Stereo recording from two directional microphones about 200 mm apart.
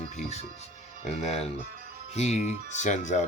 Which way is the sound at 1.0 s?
30° left (ahead or behind).